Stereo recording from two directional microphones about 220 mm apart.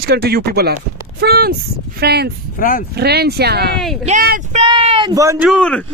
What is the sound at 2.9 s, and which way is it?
Speech, 45° right (ahead or behind).